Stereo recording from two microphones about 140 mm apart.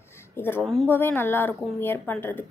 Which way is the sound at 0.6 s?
Centre (ahead or behind).